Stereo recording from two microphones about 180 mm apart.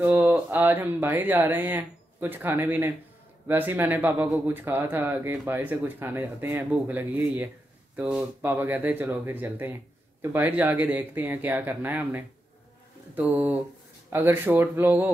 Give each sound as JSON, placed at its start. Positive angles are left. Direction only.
{"t": 0.0, "sound": "speech", "side_deg": -10}